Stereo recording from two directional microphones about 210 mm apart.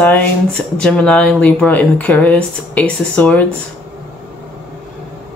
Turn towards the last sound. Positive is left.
turn(degrees=5)  # may be behind; listen again after turning